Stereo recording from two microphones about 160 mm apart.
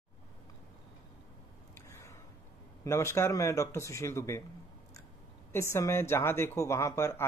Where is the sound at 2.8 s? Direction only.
15° left (ahead or behind).